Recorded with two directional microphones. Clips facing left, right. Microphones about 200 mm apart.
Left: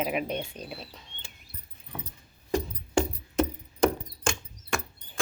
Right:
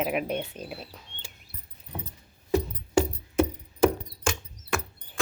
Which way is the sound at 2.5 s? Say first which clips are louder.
Right 3 dB; 5° right (ahead or behind).